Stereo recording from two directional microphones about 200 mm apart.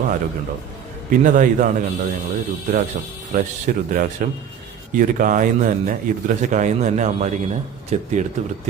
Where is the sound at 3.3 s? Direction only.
45° right (ahead or behind).